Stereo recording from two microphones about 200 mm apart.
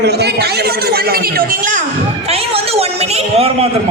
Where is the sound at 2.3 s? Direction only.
30° right (ahead or behind).